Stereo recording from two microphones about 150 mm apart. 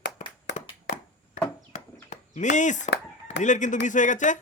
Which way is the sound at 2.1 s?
55° left (ahead or behind).